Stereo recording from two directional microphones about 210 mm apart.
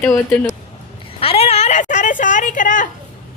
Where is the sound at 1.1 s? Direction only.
30° left (ahead or behind).